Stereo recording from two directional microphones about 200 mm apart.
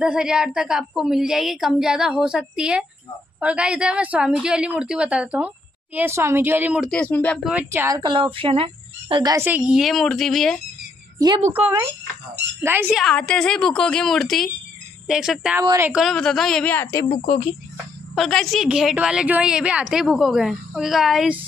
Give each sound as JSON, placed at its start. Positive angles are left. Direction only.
{"t": 0.0, "sound": "a woman's voice", "side_deg": -5}
{"t": 7.0, "sound": "speech", "side_deg": 10}
{"t": 7.4, "sound": "a woman's voice", "side_deg": -10}
{"t": 8.0, "sound": "a woman's voice", "side_deg": -25}
{"t": 11.1, "sound": "a woman's voice", "side_deg": -20}
{"t": 11.5, "sound": "a woman's voice", "side_deg": -10}
{"t": 13.0, "sound": "a woman's voice", "side_deg": 5}
{"t": 15.6, "sound": "a woman's voice", "side_deg": -15}
{"t": 15.9, "sound": "a woman's voice", "side_deg": 0}
{"t": 18.1, "sound": "a woman's voice", "side_deg": 0}